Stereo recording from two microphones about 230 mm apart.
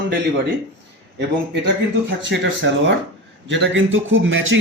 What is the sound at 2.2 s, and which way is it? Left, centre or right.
A man's voice, right.